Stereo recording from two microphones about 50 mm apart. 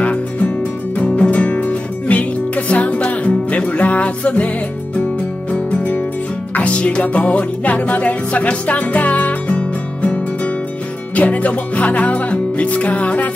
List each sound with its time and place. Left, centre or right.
0.0 s music: left
5.5 s music: left
6.6 s music: left